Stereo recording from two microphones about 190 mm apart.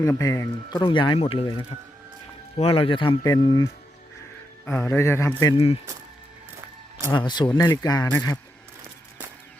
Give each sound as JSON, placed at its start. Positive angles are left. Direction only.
{"t": 0.0, "sound": "a man's voice", "side_deg": 15}
{"t": 5.5, "sound": "speech", "side_deg": 30}
{"t": 7.1, "sound": "speech", "side_deg": 25}